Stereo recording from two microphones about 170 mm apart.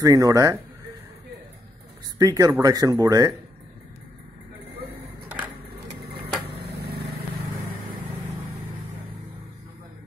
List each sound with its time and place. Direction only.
0.0 s speech: 20° right (ahead or behind)
2.1 s speech: 20° right (ahead or behind)
6.0 s a sound: 70° right (ahead or behind)